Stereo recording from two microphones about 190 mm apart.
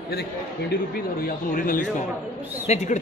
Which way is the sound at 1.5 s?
45° left (ahead or behind).